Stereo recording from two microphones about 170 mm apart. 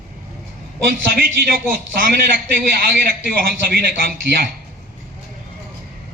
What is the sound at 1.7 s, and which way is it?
A man's voice, 55° right (ahead or behind).